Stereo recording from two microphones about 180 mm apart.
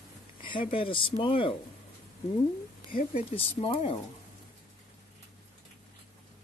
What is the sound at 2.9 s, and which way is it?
Speech, 50° left (ahead or behind).